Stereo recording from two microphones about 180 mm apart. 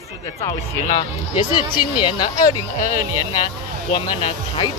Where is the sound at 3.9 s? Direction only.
25° left (ahead or behind).